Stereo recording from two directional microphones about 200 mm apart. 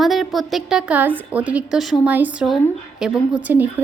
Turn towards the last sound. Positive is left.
turn(degrees=-10)  # may be behind; listen again after turning